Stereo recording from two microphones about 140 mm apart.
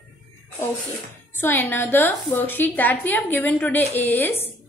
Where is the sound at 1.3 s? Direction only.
15° left (ahead or behind).